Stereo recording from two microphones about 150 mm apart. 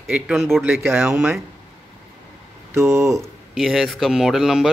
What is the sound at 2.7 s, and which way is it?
Speech, 20° right (ahead or behind).